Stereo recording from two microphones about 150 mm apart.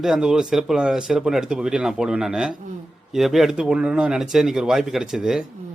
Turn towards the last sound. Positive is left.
turn(degrees=0)  # may be behind; listen again after turning